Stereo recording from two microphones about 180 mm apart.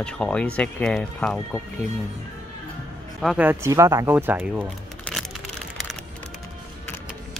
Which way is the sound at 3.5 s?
15° right (ahead or behind).